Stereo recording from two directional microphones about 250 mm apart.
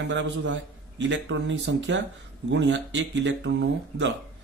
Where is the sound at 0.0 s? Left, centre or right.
Right.